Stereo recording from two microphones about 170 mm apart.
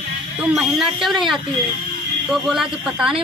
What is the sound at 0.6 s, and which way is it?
Speech, centre (ahead or behind).